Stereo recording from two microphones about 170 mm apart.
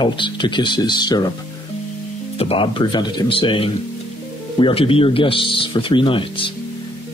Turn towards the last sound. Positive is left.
turn(degrees=30)  # may be behind; listen again after turning